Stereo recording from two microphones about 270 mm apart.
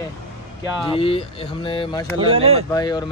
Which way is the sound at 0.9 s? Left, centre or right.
Centre.